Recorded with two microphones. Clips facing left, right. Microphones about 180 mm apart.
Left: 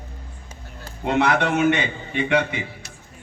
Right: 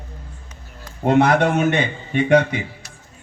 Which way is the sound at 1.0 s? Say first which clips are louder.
Right 5 dB; 45° right (ahead or behind).